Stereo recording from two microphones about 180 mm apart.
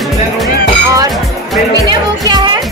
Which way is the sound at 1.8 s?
25° right (ahead or behind).